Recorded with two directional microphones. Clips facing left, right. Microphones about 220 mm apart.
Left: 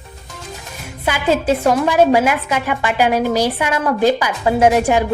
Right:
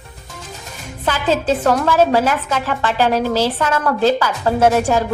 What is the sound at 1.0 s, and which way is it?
A woman's voice, 10° left (ahead or behind).